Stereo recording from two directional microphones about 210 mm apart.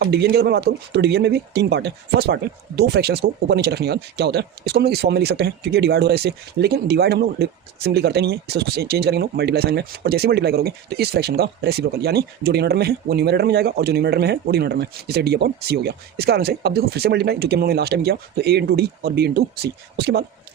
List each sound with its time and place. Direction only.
0.0 s speech: 50° right (ahead or behind)